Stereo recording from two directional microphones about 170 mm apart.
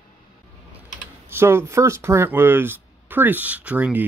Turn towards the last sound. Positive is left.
turn(degrees=-10)  # may be behind; listen again after turning